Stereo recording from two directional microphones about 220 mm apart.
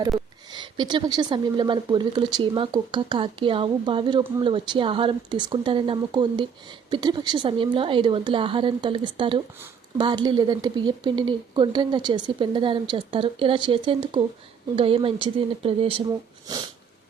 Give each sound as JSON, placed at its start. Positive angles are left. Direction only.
{"t": 0.5, "sound": "a woman's voice", "side_deg": -20}